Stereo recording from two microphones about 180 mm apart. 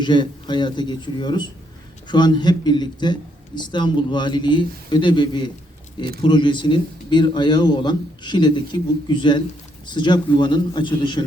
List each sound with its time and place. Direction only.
0.0 s speech: 25° left (ahead or behind)